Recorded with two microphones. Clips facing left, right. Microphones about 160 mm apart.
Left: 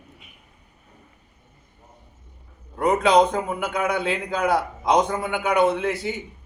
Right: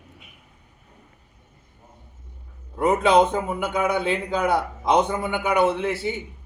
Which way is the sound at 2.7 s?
5° right (ahead or behind).